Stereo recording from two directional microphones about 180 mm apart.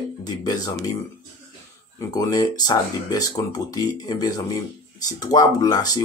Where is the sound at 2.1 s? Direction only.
20° left (ahead or behind).